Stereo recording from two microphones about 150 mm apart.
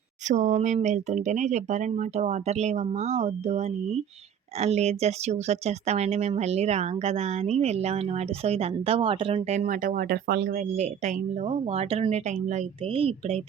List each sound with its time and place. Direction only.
0.3 s speech: 55° right (ahead or behind); by 9.3 s 35° right (ahead or behind)
9.3 s speech: 50° right (ahead or behind); by 10.6 s 85° right
10.6 s speech: 50° right (ahead or behind)